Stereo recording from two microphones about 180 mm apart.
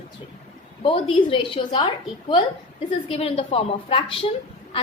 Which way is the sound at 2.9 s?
35° left (ahead or behind).